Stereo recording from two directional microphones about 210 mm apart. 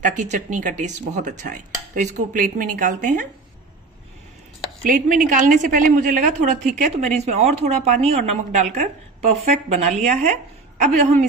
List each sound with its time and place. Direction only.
0.0 s a woman's voice: 35° right (ahead or behind)
4.8 s a woman's voice: 40° right (ahead or behind)